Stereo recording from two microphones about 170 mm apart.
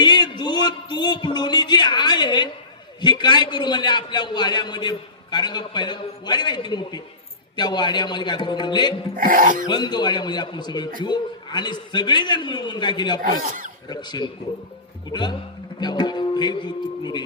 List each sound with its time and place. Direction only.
0.0 s a sound: 25° left (ahead or behind)
3.0 s a man's voice: 25° left (ahead or behind)
9.1 s speech: 55° right (ahead or behind)
9.6 s a man's voice: 25° left (ahead or behind)
13.4 s speech: 55° right (ahead or behind)
13.9 s a man's voice: 25° left (ahead or behind)